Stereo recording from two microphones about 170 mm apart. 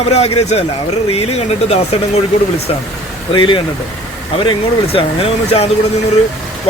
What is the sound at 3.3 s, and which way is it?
Speech, 30° left (ahead or behind).